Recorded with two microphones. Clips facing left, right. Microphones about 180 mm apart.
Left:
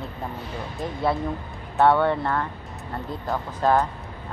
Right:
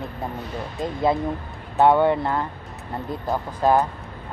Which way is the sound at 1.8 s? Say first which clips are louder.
Right 2 dB; 15° right (ahead or behind).